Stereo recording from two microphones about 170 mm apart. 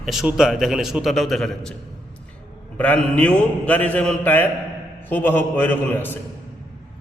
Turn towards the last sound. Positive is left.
turn(degrees=10)  # may be behind; listen again after turning